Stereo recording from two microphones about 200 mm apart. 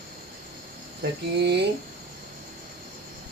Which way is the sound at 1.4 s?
55° right (ahead or behind).